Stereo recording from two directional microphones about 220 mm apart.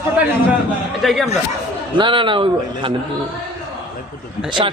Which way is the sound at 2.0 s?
20° right (ahead or behind).